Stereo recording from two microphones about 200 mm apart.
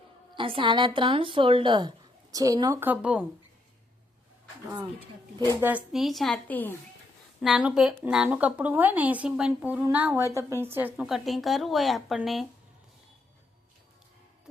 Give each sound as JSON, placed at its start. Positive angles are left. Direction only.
{"t": 0.3, "sound": "a woman's voice", "side_deg": -25}
{"t": 5.5, "sound": "a woman's voice", "side_deg": -10}
{"t": 7.4, "sound": "a woman's voice", "side_deg": -5}